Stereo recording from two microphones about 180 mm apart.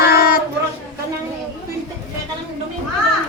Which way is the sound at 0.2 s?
55° left (ahead or behind).